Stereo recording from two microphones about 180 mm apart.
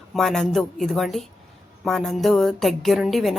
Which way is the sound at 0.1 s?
Centre (ahead or behind).